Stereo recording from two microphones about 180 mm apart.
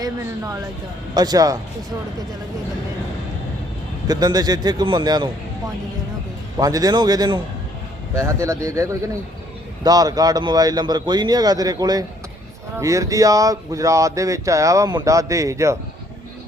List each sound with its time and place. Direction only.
0.0 s a man's voice: 20° right (ahead or behind)
4.0 s a man's voice: 20° right (ahead or behind)
6.6 s a man's voice: 20° right (ahead or behind)